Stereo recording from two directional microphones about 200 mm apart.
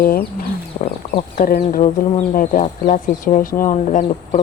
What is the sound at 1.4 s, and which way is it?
Speech, 45° left (ahead or behind).